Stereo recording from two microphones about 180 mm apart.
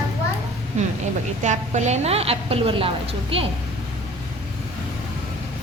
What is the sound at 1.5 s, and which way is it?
A woman's voice, 40° right (ahead or behind).